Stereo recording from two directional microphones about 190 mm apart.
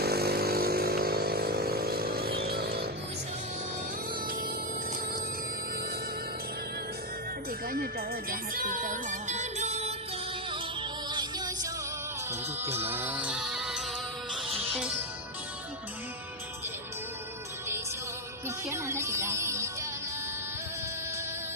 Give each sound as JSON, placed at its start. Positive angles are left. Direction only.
{"t": 0.0, "sound": "motorcycle", "side_deg": -55}
{"t": 7.7, "sound": "music", "side_deg": -50}
{"t": 11.1, "sound": "music", "side_deg": -20}
{"t": 18.4, "sound": "speech", "side_deg": -15}